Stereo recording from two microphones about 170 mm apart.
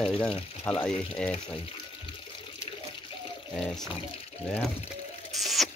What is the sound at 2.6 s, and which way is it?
Water, 30° left (ahead or behind).